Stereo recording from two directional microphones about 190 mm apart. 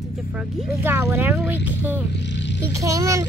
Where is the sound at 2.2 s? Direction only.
70° left (ahead or behind).